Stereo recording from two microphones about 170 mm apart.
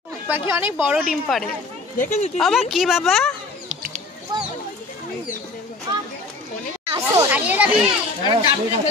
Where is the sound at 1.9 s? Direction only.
45° left (ahead or behind).